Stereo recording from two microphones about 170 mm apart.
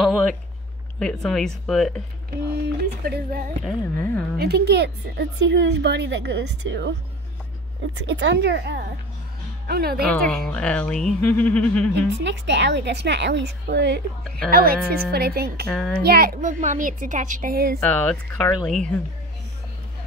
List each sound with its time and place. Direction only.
0.0 s a sound: 5° left (ahead or behind)
0.9 s speech: 5° left (ahead or behind)
2.6 s speech: 70° right (ahead or behind)
4.0 s speech: 10° left (ahead or behind)
4.4 s a woman's voice: 70° right (ahead or behind); by 8.8 s 90° right
9.7 s speech: 65° right (ahead or behind)
10.1 s speech: 5° left (ahead or behind)
12.2 s a woman's voice: 90° right
14.5 s speech: 60° right (ahead or behind)
15.7 s speech: 5° left (ahead or behind)
16.0 s a woman's voice: 65° right (ahead or behind)
17.7 s speech: 5° left (ahead or behind)